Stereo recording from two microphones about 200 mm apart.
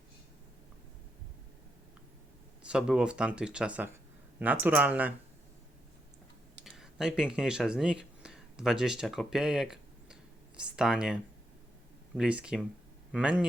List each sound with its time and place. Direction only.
2.6 s speech: 5° right (ahead or behind)
6.7 s speech: centre (ahead or behind)